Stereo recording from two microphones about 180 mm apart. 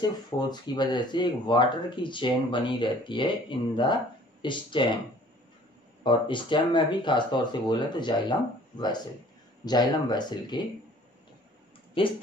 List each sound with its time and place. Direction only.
0.0 s speech: 25° left (ahead or behind)
6.0 s speech: 25° left (ahead or behind)
12.0 s speech: 30° left (ahead or behind)